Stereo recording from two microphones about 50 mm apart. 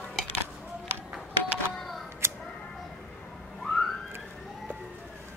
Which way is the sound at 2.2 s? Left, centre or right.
Right.